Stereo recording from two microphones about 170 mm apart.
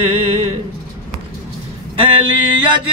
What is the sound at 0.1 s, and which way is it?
Music, 35° right (ahead or behind).